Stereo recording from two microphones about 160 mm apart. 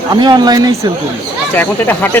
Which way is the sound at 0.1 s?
25° right (ahead or behind).